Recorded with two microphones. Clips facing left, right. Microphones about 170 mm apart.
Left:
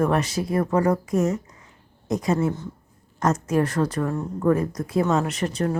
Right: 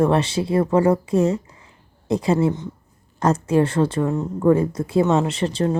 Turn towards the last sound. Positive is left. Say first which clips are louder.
# right 3 dB
turn(degrees=-30)  # may be behind; listen again after turning